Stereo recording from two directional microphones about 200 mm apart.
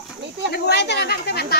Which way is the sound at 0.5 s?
55° left (ahead or behind).